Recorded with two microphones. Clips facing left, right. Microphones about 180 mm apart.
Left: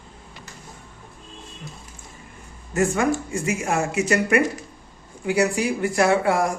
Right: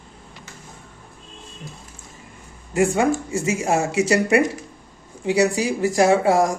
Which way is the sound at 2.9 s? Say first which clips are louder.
Right 2 dB; 30° right (ahead or behind).